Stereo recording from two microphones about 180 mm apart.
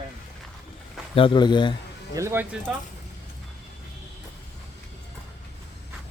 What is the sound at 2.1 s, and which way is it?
Speech, 15° right (ahead or behind).